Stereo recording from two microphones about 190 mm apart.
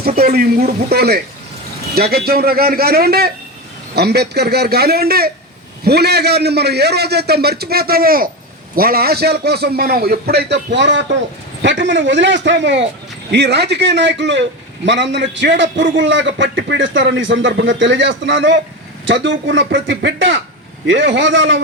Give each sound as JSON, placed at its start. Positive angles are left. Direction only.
{"t": 0.2, "sound": "a man's voice", "side_deg": -50}